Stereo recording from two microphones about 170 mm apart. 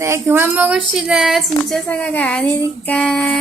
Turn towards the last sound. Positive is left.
turn(degrees=5)  # may be behind; listen again after turning